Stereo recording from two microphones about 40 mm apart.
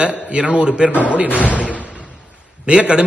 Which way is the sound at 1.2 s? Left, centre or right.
Left.